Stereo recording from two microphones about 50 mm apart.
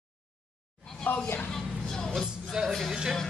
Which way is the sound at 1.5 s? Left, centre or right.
Centre.